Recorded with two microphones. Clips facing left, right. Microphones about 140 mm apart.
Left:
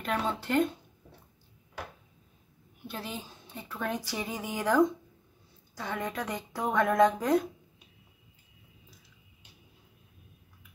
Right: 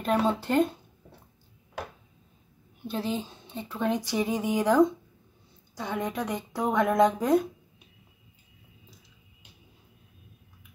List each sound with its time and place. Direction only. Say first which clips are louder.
0.0 s speech: right 6 dB; 35° right (ahead or behind)
2.9 s a woman's voice: right 9 dB; 25° right (ahead or behind); by 7.4 s 10° right (ahead or behind)